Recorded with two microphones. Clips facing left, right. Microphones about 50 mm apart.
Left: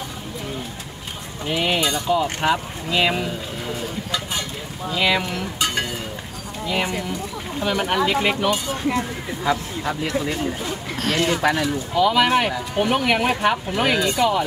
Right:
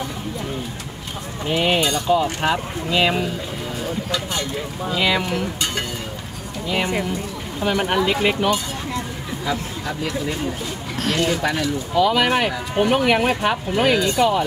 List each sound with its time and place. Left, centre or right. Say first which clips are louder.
1.5 s speech: right 2 dB; centre
4.9 s speech: even; centre
7.6 s speech: right 1 dB; centre
8.8 s speech: left 4 dB; left
11.1 s speech: left 2 dB; centre
11.9 s speech: even; centre